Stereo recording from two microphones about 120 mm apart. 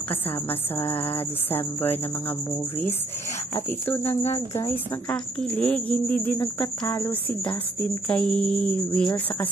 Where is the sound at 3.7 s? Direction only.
20° left (ahead or behind).